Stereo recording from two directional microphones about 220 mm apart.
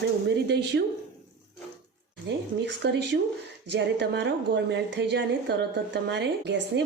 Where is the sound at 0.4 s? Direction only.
50° right (ahead or behind).